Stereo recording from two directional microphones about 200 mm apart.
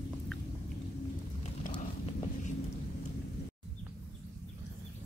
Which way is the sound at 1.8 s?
40° left (ahead or behind).